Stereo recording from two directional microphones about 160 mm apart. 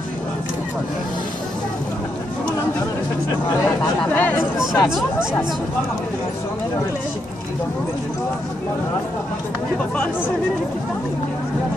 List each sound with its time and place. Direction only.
3.4 s speech: 25° left (ahead or behind)
4.0 s speech: 10° left (ahead or behind)